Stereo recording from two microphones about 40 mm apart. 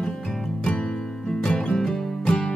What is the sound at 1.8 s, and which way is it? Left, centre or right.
Music, centre.